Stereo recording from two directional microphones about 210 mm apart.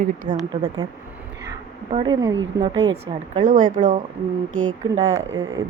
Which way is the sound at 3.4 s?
40° right (ahead or behind).